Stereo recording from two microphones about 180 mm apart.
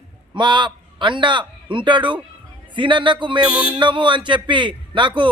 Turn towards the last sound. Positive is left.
turn(degrees=-25)  # may be behind; listen again after turning